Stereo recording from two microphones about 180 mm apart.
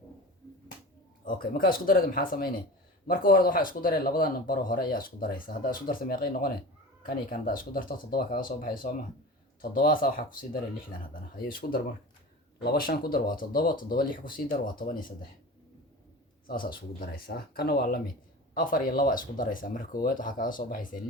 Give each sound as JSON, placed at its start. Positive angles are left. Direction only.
{"t": 1.2, "sound": "speech", "side_deg": 50}
{"t": 16.5, "sound": "speech", "side_deg": 55}